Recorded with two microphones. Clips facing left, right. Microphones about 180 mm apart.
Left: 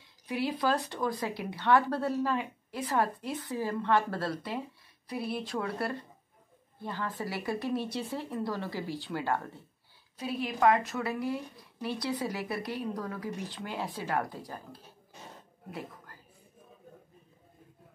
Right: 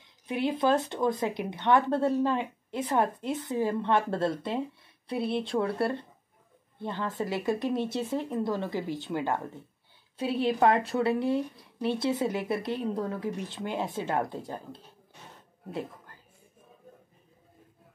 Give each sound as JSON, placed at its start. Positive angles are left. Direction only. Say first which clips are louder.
{"t": 0.3, "sound": "speech", "louder": "right 4 dB", "side_deg": -25}
{"t": 10.1, "sound": "speech", "louder": "right 7 dB", "side_deg": -30}